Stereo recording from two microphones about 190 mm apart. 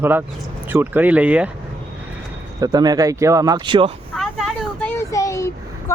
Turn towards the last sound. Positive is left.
turn(degrees=15)  # may be behind; listen again after turning